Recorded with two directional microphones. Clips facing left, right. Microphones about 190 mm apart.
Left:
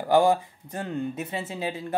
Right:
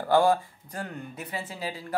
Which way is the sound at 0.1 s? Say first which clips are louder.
Left 2 dB; 20° left (ahead or behind).